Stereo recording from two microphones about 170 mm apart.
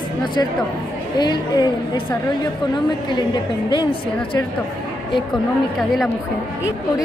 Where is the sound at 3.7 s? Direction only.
25° left (ahead or behind).